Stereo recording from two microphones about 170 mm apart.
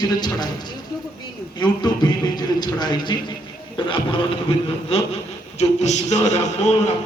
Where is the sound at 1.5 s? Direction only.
25° left (ahead or behind).